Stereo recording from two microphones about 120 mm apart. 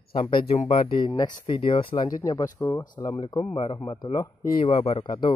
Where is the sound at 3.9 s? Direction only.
35° left (ahead or behind).